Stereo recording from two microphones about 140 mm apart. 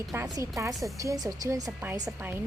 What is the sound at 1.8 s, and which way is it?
Speech, 15° right (ahead or behind).